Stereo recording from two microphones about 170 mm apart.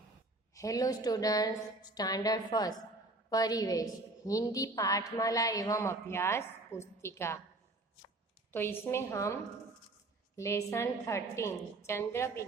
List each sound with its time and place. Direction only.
0.5 s a woman's voice: 20° left (ahead or behind)
8.5 s a woman's voice: 15° left (ahead or behind)